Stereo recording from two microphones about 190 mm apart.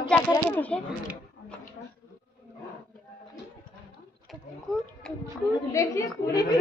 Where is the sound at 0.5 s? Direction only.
10° left (ahead or behind).